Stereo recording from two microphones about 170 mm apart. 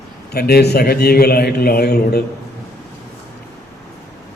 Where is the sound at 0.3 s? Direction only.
70° left (ahead or behind).